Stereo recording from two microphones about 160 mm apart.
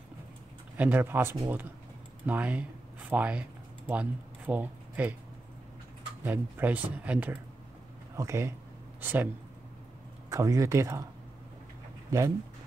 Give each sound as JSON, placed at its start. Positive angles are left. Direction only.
{"t": 0.7, "sound": "speech", "side_deg": -10}
{"t": 6.2, "sound": "speech", "side_deg": -10}
{"t": 10.3, "sound": "speech", "side_deg": -20}